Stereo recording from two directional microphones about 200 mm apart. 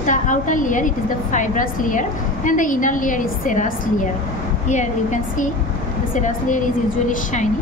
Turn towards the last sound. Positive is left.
turn(degrees=40)  # may be behind; listen again after turning